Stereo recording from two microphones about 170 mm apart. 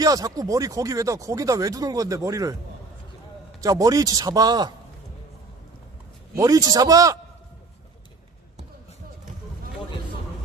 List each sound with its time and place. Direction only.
0.0 s speech: 20° right (ahead or behind)
3.6 s speech: 20° right (ahead or behind)
6.3 s speech: 20° right (ahead or behind)